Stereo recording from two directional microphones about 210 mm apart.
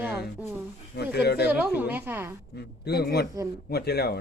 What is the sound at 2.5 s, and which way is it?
Speech, 50° left (ahead or behind).